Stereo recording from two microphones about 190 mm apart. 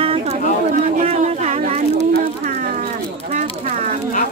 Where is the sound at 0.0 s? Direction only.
30° right (ahead or behind).